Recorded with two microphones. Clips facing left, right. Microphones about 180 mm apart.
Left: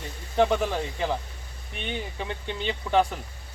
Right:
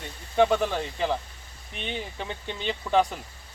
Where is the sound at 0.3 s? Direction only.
Centre (ahead or behind).